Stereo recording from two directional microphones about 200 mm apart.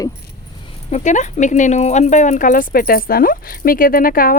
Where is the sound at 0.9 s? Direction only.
35° left (ahead or behind).